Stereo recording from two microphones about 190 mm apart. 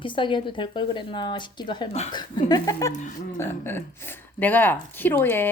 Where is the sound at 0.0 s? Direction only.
25° left (ahead or behind).